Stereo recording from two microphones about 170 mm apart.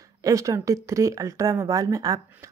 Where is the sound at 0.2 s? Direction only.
20° right (ahead or behind).